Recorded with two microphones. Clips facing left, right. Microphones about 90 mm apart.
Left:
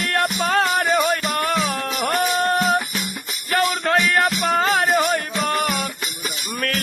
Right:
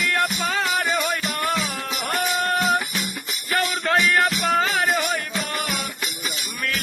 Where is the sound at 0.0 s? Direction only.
50° left (ahead or behind).